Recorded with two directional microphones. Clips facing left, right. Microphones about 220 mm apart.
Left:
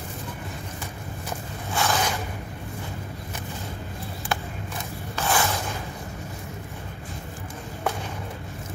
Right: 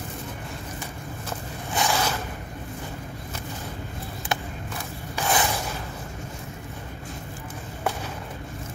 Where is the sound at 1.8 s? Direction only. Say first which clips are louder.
Even; 20° right (ahead or behind).